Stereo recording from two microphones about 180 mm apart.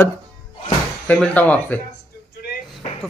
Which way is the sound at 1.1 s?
10° left (ahead or behind).